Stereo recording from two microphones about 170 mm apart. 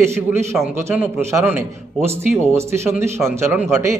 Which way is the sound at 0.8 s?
15° right (ahead or behind).